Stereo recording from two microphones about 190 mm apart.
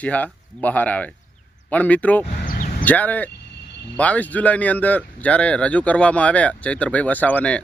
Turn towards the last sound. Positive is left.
turn(degrees=5)  # may be behind; listen again after turning